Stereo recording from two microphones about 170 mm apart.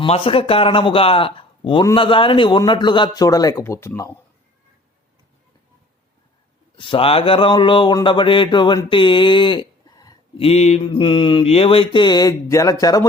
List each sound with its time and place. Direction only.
0.0 s speech: 35° left (ahead or behind); by 4.2 s 20° left (ahead or behind)
6.7 s speech: 30° left (ahead or behind)